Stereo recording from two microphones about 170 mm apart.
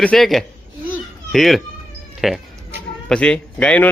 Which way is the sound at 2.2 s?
Centre (ahead or behind).